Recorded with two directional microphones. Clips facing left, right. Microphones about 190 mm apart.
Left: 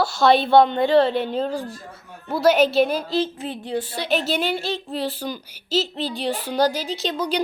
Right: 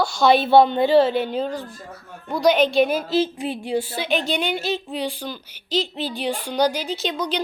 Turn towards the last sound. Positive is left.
turn(degrees=5)  # may be behind; listen again after turning